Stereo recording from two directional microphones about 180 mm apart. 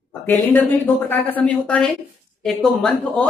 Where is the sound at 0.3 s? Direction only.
10° left (ahead or behind).